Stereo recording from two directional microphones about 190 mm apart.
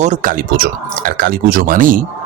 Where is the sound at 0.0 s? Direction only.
40° right (ahead or behind).